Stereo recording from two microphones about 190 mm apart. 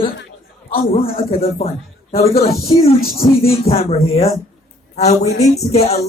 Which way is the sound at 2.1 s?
35° left (ahead or behind).